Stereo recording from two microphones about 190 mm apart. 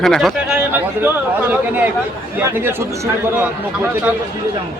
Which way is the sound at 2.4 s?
10° right (ahead or behind).